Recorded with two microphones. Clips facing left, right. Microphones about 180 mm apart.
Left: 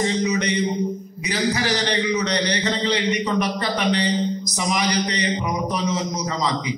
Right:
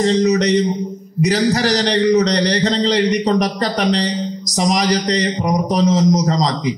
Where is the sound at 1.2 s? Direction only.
40° right (ahead or behind).